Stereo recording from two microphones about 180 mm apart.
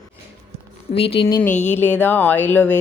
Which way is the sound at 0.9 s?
30° left (ahead or behind).